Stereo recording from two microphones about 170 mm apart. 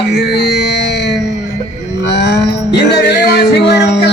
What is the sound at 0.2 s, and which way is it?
Music, 75° left (ahead or behind).